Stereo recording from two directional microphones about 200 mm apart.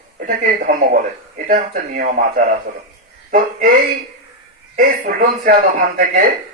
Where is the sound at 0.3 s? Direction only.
45° right (ahead or behind).